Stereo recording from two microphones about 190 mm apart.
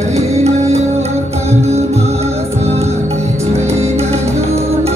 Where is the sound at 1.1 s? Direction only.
15° right (ahead or behind).